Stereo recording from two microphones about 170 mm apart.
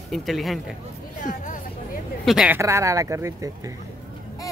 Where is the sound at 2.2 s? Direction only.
Centre (ahead or behind).